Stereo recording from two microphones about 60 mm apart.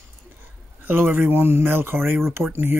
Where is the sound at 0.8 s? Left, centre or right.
Right.